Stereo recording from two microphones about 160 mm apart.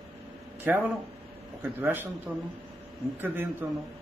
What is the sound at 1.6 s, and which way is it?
Speech, 10° right (ahead or behind).